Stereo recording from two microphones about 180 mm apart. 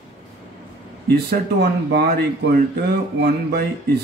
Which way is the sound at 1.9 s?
65° right (ahead or behind).